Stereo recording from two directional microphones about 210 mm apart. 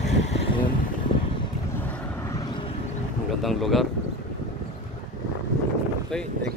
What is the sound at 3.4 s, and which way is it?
Speech, centre (ahead or behind).